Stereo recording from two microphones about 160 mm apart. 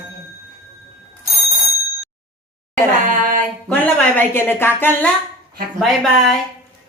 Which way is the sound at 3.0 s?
55° right (ahead or behind).